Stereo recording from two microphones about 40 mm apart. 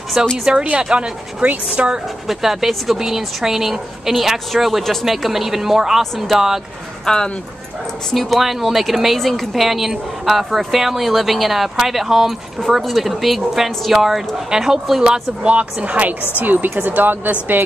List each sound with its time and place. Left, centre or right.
0.2 s a woman's voice: right
2.2 s speech: centre
7.1 s speech: centre
8.1 s speech: centre
15.4 s speech: right
16.3 s speech: right